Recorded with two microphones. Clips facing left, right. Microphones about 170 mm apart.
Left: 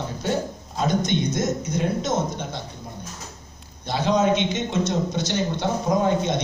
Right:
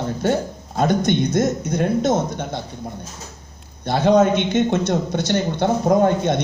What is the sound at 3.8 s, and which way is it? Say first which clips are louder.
Speech: right 6 dB; 55° right (ahead or behind).